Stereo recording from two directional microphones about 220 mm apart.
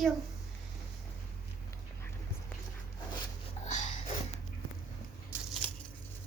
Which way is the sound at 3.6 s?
35° left (ahead or behind).